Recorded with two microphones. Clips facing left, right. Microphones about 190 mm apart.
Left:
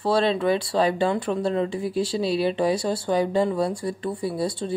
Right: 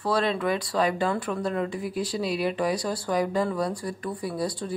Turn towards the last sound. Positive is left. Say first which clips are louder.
# left 3 dB
turn(degrees=25)  # may be behind; listen again after turning